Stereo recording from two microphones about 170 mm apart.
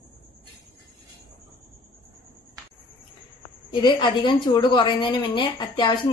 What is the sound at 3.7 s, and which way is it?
A woman's voice, 25° left (ahead or behind).